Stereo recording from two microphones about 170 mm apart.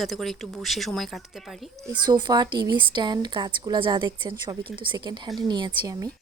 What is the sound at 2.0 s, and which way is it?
A woman's voice, 25° right (ahead or behind).